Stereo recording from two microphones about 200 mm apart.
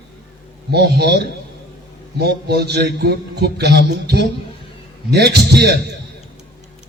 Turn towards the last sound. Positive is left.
turn(degrees=-55)  # may be behind; listen again after turning